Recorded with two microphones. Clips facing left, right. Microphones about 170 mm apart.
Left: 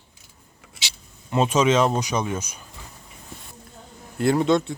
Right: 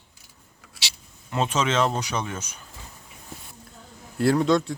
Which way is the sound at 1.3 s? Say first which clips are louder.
Left 5 dB; 15° left (ahead or behind).